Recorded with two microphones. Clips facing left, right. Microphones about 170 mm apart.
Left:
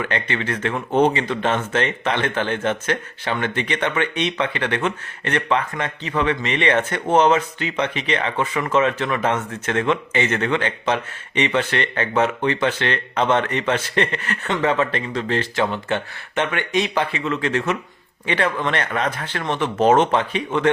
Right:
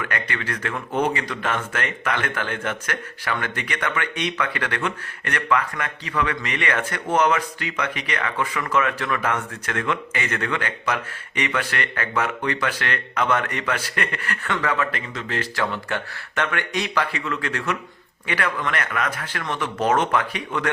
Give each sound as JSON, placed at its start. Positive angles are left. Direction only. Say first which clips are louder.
{"t": 0.0, "sound": "speech", "louder": "left 4 dB", "side_deg": 25}